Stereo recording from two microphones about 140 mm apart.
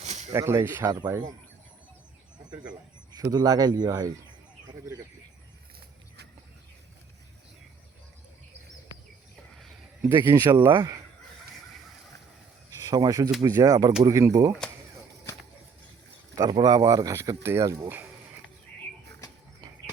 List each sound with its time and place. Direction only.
0.0 s a sound: 55° right (ahead or behind)
0.3 s speech: 20° right (ahead or behind)
3.2 s speech: 25° right (ahead or behind)
9.6 s a sound: centre (ahead or behind)
10.1 s speech: 15° right (ahead or behind)
10.7 s speech: 30° right (ahead or behind)
12.9 s speech: 25° right (ahead or behind)
16.6 s speech: 30° right (ahead or behind)